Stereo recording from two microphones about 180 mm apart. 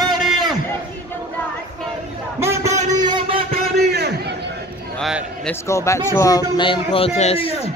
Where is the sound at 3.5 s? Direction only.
60° right (ahead or behind).